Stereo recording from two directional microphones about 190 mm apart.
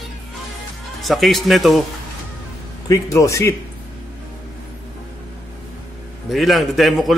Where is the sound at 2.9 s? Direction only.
15° left (ahead or behind).